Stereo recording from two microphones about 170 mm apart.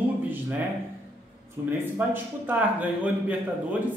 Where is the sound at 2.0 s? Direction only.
10° right (ahead or behind).